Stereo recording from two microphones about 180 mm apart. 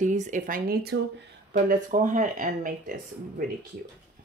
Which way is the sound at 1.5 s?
50° right (ahead or behind).